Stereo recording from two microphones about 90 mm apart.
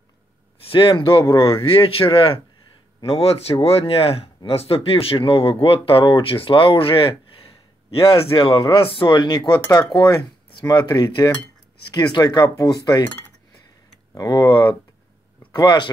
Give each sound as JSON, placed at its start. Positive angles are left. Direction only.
{"t": 0.7, "sound": "speech", "side_deg": 75}
{"t": 1.6, "sound": "speech", "side_deg": 90}
{"t": 14.1, "sound": "speech", "side_deg": 50}